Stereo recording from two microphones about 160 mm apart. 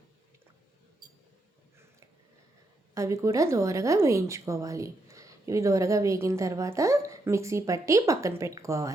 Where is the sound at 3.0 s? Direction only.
20° right (ahead or behind).